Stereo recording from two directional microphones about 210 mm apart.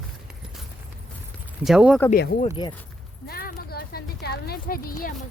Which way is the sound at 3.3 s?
45° left (ahead or behind).